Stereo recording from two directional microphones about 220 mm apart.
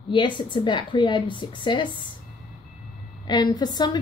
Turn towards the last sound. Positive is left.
turn(degrees=20)  # may be behind; listen again after turning